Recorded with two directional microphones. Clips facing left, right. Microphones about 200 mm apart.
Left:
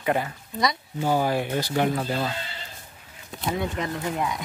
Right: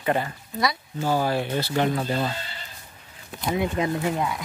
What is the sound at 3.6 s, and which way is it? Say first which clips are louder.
Speech: right 4 dB; 20° right (ahead or behind).